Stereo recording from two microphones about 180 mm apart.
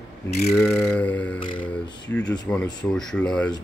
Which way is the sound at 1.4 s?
25° left (ahead or behind).